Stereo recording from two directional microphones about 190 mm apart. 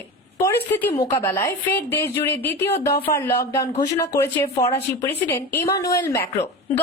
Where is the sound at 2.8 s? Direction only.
30° left (ahead or behind).